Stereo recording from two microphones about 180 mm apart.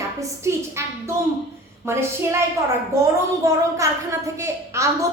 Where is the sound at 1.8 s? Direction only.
15° right (ahead or behind).